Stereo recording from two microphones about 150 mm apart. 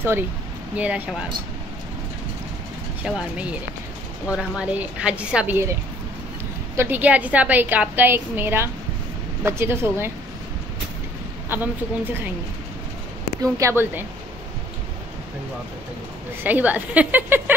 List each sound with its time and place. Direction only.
0.7 s a woman's voice: 10° right (ahead or behind)
3.0 s a woman's voice: 5° right (ahead or behind)
6.8 s a woman's voice: 10° right (ahead or behind)
11.4 s a woman's voice: 15° right (ahead or behind)
13.4 s a woman's voice: 20° right (ahead or behind)
16.4 s a woman's voice: 10° right (ahead or behind)